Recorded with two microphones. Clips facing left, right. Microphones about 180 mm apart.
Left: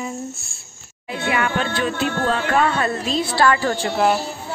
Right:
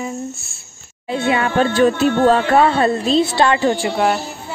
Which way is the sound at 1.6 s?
40° right (ahead or behind).